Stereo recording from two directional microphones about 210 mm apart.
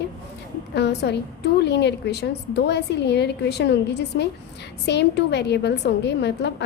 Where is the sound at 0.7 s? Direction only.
55° left (ahead or behind).